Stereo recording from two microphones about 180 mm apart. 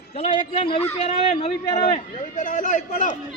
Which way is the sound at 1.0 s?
40° left (ahead or behind).